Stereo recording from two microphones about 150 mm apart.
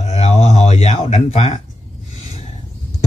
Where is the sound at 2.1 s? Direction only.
50° left (ahead or behind).